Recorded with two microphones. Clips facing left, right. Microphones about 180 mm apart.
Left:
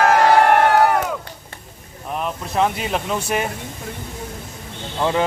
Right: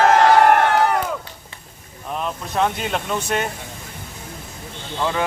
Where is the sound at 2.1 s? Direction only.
5° left (ahead or behind).